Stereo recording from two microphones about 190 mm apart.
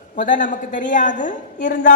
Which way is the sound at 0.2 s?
45° left (ahead or behind).